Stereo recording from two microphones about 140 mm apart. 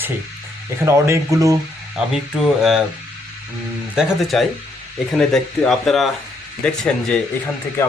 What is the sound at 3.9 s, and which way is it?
A man's voice, centre (ahead or behind).